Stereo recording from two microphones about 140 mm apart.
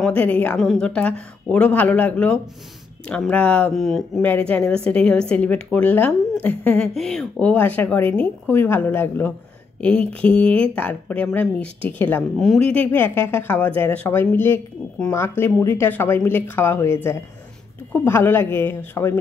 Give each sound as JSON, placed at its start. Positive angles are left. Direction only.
{"t": 0.0, "sound": "speech", "side_deg": 10}
{"t": 4.2, "sound": "speech", "side_deg": 10}